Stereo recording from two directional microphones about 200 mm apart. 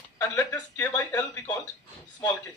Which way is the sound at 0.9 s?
15° left (ahead or behind).